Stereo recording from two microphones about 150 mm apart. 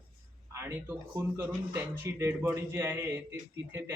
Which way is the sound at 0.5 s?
15° right (ahead or behind).